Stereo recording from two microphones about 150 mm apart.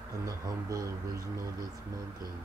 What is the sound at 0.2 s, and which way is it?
Speech, 25° right (ahead or behind).